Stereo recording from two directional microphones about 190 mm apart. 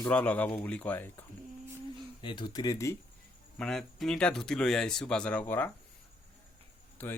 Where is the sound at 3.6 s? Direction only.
Centre (ahead or behind).